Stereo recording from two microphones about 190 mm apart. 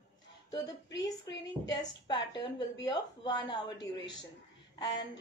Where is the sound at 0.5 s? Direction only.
20° left (ahead or behind).